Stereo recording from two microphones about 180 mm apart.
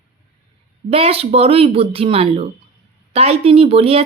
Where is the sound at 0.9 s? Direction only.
30° right (ahead or behind).